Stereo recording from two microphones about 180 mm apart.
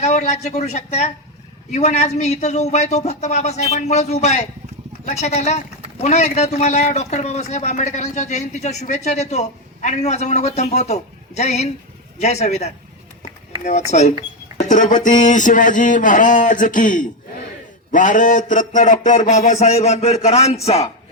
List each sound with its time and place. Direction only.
0.0 s speech: 40° left (ahead or behind)